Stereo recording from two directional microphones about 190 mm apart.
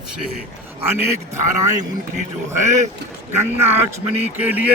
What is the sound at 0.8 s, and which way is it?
Speech, 10° right (ahead or behind).